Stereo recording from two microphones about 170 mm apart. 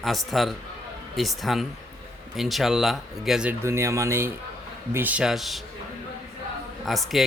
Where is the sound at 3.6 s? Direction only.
15° right (ahead or behind).